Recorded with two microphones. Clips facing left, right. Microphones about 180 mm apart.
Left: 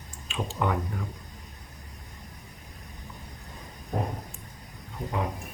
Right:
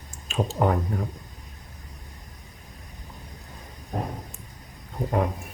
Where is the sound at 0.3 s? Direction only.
40° right (ahead or behind).